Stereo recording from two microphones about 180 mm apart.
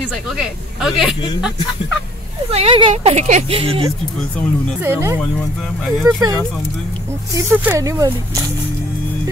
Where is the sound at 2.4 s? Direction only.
35° right (ahead or behind).